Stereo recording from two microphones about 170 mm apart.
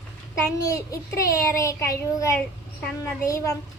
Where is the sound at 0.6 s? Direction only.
20° left (ahead or behind).